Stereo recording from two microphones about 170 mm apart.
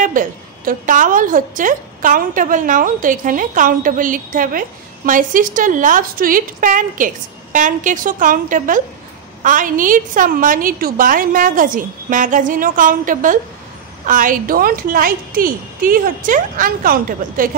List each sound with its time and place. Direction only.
0.0 s a woman's voice: 50° right (ahead or behind)